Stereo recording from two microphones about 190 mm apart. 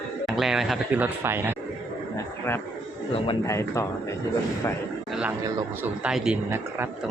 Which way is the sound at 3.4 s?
15° left (ahead or behind).